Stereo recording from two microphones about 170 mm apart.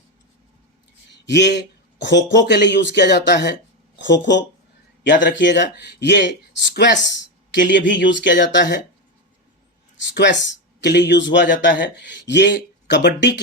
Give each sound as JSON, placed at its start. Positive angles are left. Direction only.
{"t": 1.3, "sound": "a man's voice", "side_deg": 90}
{"t": 10.1, "sound": "a man's voice", "side_deg": 90}